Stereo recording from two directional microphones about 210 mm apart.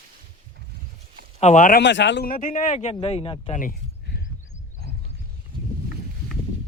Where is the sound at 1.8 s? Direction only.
55° left (ahead or behind); by 3.6 s 25° left (ahead or behind).